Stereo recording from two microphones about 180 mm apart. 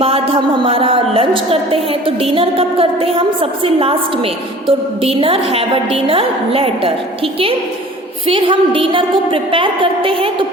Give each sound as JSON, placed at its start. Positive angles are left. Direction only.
{"t": 0.0, "sound": "a woman's voice", "side_deg": -30}
{"t": 8.3, "sound": "a woman's voice", "side_deg": -30}